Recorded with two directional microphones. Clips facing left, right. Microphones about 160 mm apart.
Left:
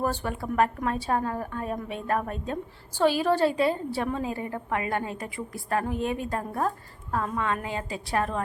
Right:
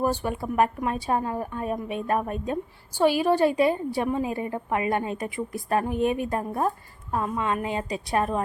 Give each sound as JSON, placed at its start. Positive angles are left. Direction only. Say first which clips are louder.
{"t": 0.0, "sound": "a woman's voice", "louder": "right 3 dB", "side_deg": -15}